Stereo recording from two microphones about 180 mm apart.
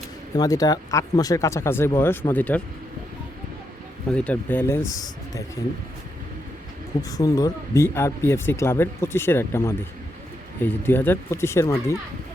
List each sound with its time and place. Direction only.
0.3 s speech: 20° left (ahead or behind)
4.1 s speech: 5° left (ahead or behind)
7.1 s speech: 20° left (ahead or behind)